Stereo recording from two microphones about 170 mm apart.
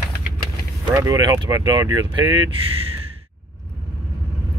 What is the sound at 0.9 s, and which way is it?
Speech, 20° right (ahead or behind).